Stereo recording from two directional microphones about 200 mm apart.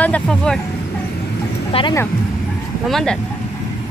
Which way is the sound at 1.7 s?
25° left (ahead or behind).